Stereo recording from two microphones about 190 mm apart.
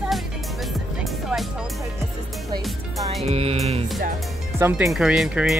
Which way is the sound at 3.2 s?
35° right (ahead or behind).